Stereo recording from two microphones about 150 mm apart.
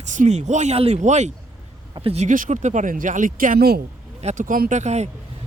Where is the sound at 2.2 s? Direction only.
60° right (ahead or behind); by 3.8 s 80° right.